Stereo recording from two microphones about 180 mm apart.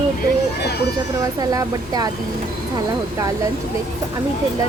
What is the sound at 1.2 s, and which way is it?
Speech, 20° right (ahead or behind).